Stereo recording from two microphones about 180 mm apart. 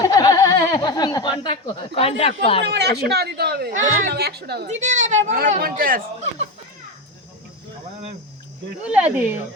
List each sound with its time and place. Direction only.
0.0 s a sound: 20° left (ahead or behind)
2.4 s speech: 30° left (ahead or behind)
2.7 s speech: 65° right (ahead or behind)
4.7 s speech: 45° right (ahead or behind)
8.8 s speech: 5° right (ahead or behind)